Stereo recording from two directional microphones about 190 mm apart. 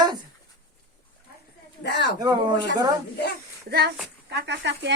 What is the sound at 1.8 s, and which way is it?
Speech, 65° left (ahead or behind).